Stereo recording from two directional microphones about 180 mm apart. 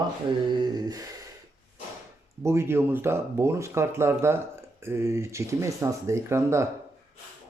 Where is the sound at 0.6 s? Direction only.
20° right (ahead or behind).